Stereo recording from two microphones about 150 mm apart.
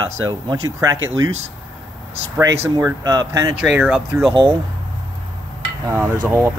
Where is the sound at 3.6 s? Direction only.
10° right (ahead or behind).